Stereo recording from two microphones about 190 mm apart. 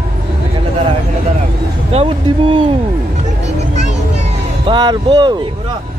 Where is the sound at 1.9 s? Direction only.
30° right (ahead or behind).